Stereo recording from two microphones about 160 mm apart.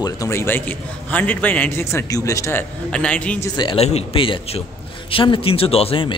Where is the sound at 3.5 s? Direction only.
35° left (ahead or behind).